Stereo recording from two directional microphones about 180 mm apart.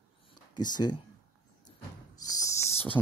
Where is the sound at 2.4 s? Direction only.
15° left (ahead or behind).